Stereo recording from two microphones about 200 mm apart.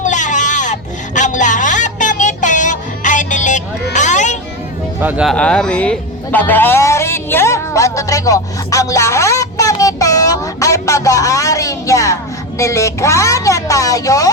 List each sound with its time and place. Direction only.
0.0 s a sound: 40° left (ahead or behind)
4.9 s music: 10° right (ahead or behind); by 12.1 s 15° left (ahead or behind)
12.5 s a woman's voice: 15° left (ahead or behind)